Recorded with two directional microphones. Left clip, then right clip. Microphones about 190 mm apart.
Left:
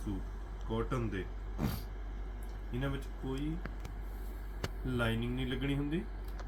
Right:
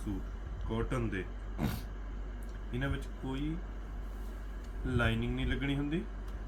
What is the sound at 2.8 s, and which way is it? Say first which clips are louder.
Speech: right 1 dB; 10° right (ahead or behind).